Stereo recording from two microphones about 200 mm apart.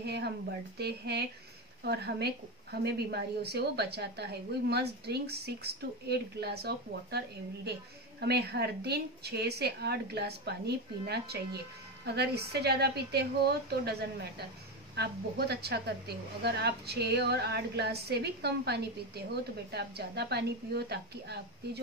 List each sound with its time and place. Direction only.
0.0 s a woman's voice: 55° right (ahead or behind)